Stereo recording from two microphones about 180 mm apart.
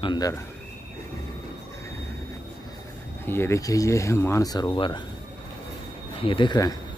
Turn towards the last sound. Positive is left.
turn(degrees=20)  # may be behind; listen again after turning